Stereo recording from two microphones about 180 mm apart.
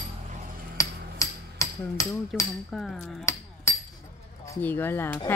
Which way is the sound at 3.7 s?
15° left (ahead or behind).